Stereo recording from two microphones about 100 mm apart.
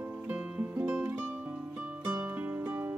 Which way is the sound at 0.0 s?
15° right (ahead or behind).